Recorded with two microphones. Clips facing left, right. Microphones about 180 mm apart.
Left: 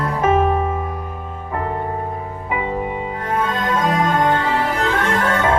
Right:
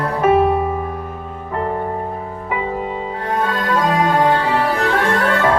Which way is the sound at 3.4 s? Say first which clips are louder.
Right 1 dB; 35° right (ahead or behind).